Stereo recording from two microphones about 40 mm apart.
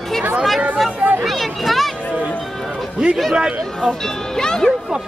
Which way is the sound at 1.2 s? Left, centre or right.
Centre.